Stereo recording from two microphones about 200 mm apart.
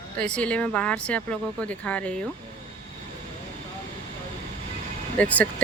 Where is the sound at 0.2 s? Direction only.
5° left (ahead or behind).